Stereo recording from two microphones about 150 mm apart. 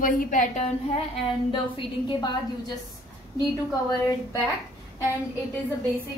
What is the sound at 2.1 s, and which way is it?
Speech, 30° left (ahead or behind).